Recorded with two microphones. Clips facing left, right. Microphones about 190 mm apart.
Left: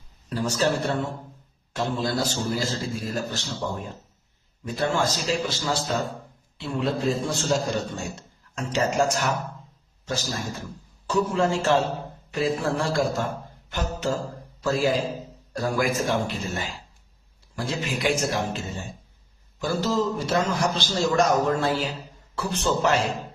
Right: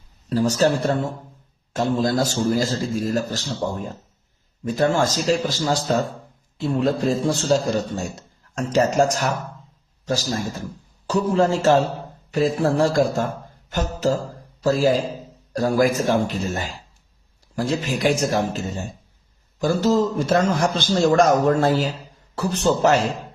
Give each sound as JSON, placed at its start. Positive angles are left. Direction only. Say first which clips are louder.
{"t": 0.3, "sound": "a man's voice", "louder": "right 6 dB", "side_deg": -40}
{"t": 4.6, "sound": "a man's voice", "louder": "right 5 dB", "side_deg": -45}
{"t": 14.6, "sound": "a man's voice", "louder": "right 5 dB", "side_deg": -40}